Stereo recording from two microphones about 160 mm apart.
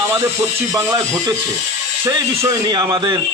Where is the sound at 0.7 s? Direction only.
20° right (ahead or behind).